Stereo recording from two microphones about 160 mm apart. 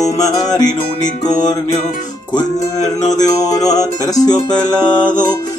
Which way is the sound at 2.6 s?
20° left (ahead or behind).